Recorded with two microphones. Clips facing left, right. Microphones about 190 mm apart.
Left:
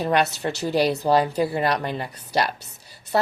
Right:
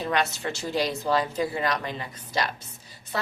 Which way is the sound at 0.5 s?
65° left (ahead or behind).